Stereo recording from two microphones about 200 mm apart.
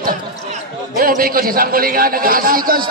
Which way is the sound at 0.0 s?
45° right (ahead or behind).